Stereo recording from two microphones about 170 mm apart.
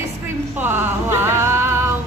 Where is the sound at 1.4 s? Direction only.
15° right (ahead or behind).